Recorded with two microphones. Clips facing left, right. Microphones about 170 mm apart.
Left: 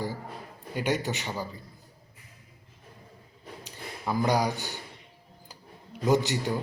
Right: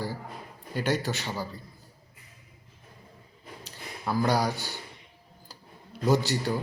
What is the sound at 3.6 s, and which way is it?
Speech, 15° left (ahead or behind).